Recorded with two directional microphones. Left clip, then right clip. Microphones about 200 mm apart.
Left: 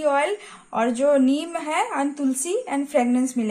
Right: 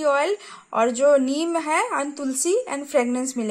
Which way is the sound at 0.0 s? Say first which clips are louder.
Even; 45° right (ahead or behind).